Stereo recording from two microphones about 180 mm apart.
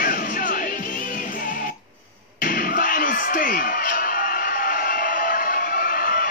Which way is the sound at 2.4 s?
50° left (ahead or behind).